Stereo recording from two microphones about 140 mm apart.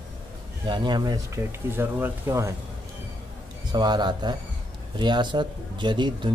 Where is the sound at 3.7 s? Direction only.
30° right (ahead or behind).